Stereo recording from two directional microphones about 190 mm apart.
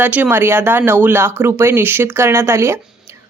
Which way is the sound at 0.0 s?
10° right (ahead or behind).